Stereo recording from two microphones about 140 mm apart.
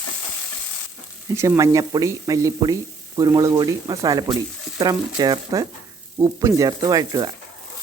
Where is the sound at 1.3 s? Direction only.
20° right (ahead or behind).